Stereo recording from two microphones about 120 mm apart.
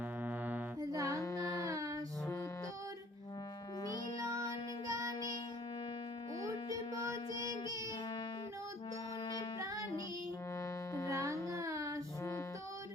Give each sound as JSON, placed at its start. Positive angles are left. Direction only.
{"t": 0.3, "sound": "music", "side_deg": -15}
{"t": 0.8, "sound": "music", "side_deg": -30}
{"t": 7.1, "sound": "music", "side_deg": -25}
{"t": 11.1, "sound": "child singing", "side_deg": -25}